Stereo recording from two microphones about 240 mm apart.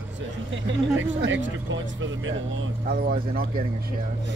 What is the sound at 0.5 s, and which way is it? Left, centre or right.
Speech, right.